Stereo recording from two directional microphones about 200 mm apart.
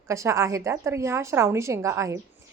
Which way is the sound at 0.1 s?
15° right (ahead or behind).